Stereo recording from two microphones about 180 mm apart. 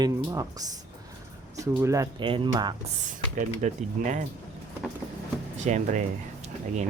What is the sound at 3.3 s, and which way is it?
Speech, 40° right (ahead or behind).